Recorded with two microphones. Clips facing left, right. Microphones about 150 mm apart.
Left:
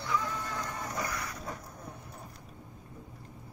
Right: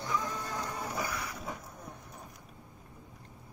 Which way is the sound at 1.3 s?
Centre (ahead or behind).